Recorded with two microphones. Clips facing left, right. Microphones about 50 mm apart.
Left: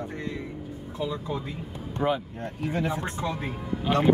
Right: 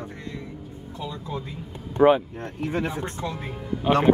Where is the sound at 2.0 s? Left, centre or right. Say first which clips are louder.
Right 9 dB; right.